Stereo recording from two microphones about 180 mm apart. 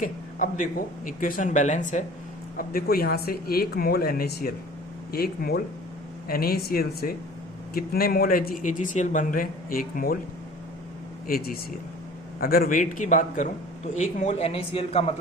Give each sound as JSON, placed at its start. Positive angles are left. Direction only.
{"t": 0.0, "sound": "speech", "side_deg": 45}
{"t": 2.6, "sound": "speech", "side_deg": 55}
{"t": 11.3, "sound": "speech", "side_deg": 55}